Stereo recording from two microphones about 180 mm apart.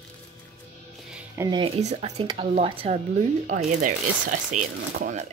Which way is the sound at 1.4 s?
25° right (ahead or behind).